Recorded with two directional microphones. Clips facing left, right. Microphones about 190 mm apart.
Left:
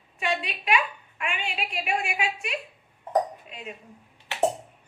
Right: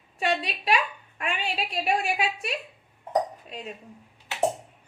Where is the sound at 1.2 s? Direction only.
35° right (ahead or behind).